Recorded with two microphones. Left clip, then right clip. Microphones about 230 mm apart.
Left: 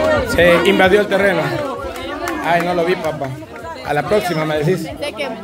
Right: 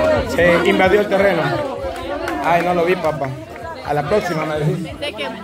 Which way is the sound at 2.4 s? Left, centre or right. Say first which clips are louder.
Even; centre.